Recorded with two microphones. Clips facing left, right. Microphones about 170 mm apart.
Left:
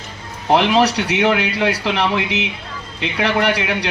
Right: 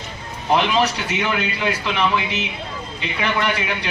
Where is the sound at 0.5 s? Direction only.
70° left (ahead or behind).